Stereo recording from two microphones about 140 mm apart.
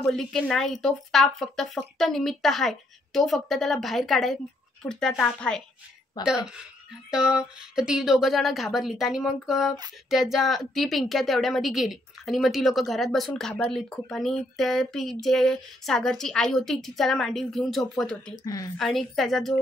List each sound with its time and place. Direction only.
0.0 s speech: 5° left (ahead or behind)
18.4 s a woman's voice: 25° left (ahead or behind)
18.8 s speech: centre (ahead or behind)